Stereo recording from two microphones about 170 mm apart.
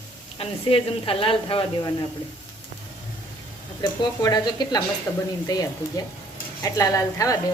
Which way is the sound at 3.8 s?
25° left (ahead or behind).